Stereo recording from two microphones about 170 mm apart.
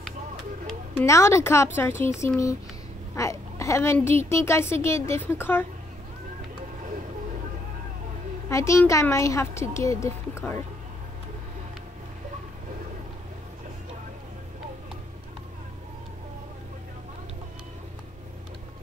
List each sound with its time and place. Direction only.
1.0 s a woman's voice: 15° left (ahead or behind)
8.5 s a woman's voice: 15° left (ahead or behind)